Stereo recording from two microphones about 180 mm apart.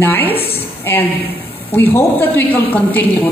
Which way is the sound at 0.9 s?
10° left (ahead or behind).